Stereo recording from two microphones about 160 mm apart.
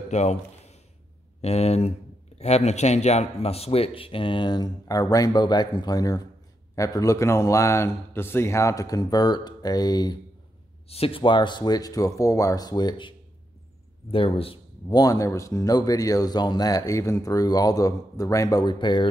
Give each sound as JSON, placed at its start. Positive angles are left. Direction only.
{"t": 0.1, "sound": "a sound", "side_deg": 45}
{"t": 1.4, "sound": "speech", "side_deg": 40}
{"t": 10.9, "sound": "speech", "side_deg": 35}
{"t": 14.1, "sound": "speech", "side_deg": 35}
{"t": 15.0, "sound": "speech", "side_deg": 20}